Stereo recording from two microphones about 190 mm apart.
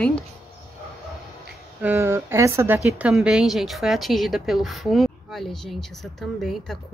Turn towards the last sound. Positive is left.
turn(degrees=0)  # may be behind; listen again after turning